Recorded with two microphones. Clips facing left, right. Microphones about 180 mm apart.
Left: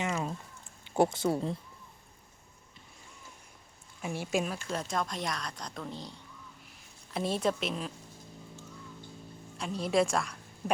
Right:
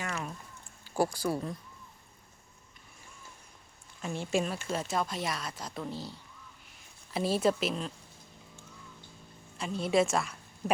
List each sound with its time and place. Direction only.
0.0 s a sound: 20° left (ahead or behind)
0.9 s speech: 20° left (ahead or behind)
4.0 s speech: 10° left (ahead or behind)
9.6 s speech: centre (ahead or behind)